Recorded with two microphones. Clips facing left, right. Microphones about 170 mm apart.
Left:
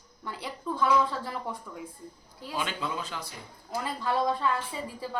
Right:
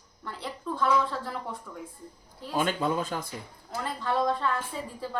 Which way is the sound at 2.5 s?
45° right (ahead or behind).